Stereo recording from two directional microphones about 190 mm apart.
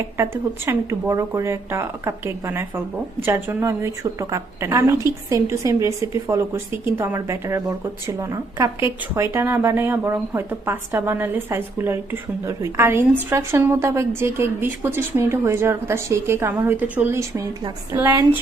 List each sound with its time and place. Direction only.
0.2 s a woman's voice: 15° right (ahead or behind)